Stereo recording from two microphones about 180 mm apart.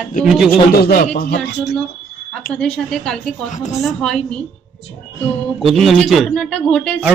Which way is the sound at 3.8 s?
5° left (ahead or behind).